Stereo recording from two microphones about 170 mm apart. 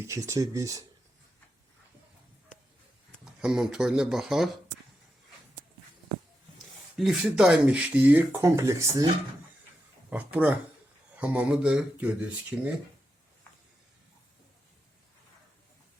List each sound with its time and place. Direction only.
0.0 s speech: 15° right (ahead or behind)
3.4 s speech: 5° right (ahead or behind)
6.9 s speech: centre (ahead or behind); by 9.0 s 20° right (ahead or behind)
10.1 s speech: 10° right (ahead or behind)